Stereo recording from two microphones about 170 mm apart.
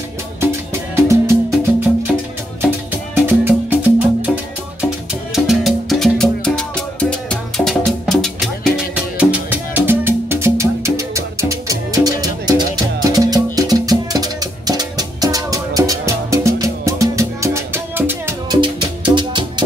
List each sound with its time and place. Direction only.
0.4 s music: 15° right (ahead or behind)
3.3 s music: 10° right (ahead or behind)
5.3 s music: centre (ahead or behind)
8.9 s music: 10° right (ahead or behind)
18.6 s music: 30° right (ahead or behind)